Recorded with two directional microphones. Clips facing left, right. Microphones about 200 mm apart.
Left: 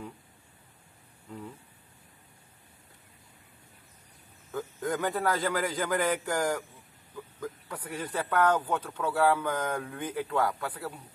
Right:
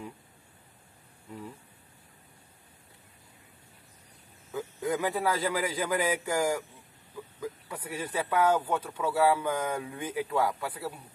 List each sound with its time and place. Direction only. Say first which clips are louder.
4.5 s a man's voice: right 1 dB; 5° right (ahead or behind)